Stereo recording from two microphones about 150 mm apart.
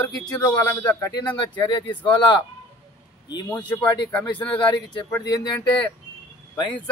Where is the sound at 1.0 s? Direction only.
30° left (ahead or behind).